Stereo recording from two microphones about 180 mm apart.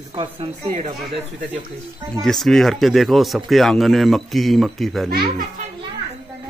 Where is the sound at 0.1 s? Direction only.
30° right (ahead or behind).